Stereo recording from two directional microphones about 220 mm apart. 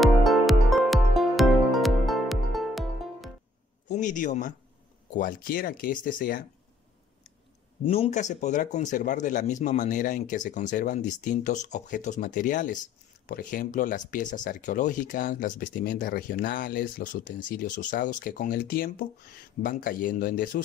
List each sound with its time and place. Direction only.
0.0 s music: centre (ahead or behind)
3.9 s speech: 35° left (ahead or behind)
7.8 s speech: 25° left (ahead or behind)